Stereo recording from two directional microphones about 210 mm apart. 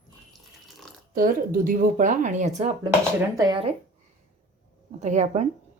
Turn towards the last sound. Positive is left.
turn(degrees=-35)  # may be behind; listen again after turning